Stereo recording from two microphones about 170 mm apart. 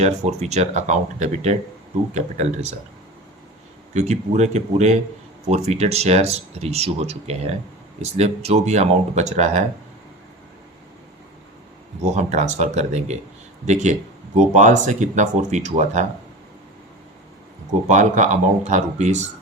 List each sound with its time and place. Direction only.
0.0 s speech: 40° right (ahead or behind)
3.9 s speech: 40° right (ahead or behind)
12.0 s speech: 40° right (ahead or behind)
17.8 s speech: 45° right (ahead or behind)